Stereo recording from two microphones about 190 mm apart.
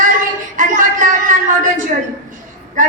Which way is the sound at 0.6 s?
45° right (ahead or behind).